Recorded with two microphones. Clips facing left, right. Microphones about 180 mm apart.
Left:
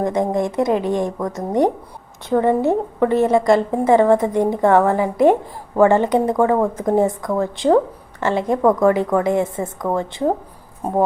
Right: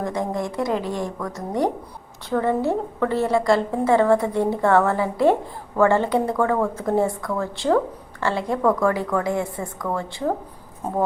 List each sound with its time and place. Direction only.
0.0 s a woman's voice: 20° left (ahead or behind)
2.3 s a woman's voice: 20° left (ahead or behind)